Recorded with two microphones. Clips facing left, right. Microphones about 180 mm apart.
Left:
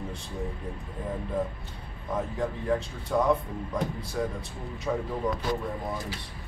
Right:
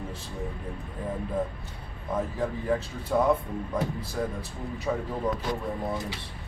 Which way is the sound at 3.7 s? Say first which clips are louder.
Even; centre (ahead or behind).